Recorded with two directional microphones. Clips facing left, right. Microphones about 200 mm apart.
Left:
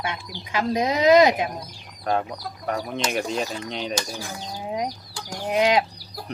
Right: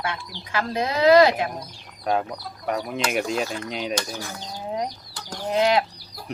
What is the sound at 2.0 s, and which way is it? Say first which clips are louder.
Speech: even; 5° right (ahead or behind).